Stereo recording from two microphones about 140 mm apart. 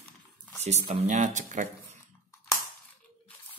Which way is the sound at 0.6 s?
55° right (ahead or behind).